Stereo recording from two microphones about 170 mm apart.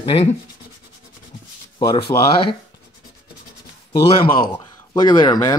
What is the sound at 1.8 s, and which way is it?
Speech, 25° left (ahead or behind).